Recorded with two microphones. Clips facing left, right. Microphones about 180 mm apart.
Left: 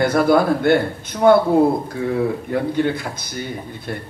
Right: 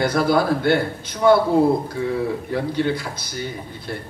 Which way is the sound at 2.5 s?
50° left (ahead or behind).